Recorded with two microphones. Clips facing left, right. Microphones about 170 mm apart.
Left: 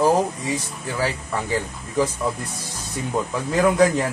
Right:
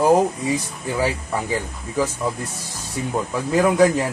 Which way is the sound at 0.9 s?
10° right (ahead or behind).